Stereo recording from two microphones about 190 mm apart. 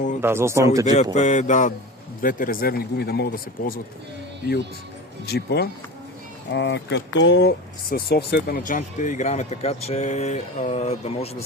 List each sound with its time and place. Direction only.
0.2 s speech: 15° right (ahead or behind)
1.1 s speech: 40° left (ahead or behind)
5.2 s speech: 60° left (ahead or behind); by 11.3 s 35° left (ahead or behind)